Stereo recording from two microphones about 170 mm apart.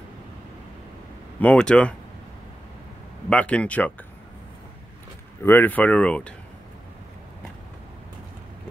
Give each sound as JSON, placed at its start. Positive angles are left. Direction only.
{"t": 1.4, "sound": "speech", "side_deg": 5}
{"t": 3.3, "sound": "speech", "side_deg": 5}
{"t": 5.4, "sound": "speech", "side_deg": 10}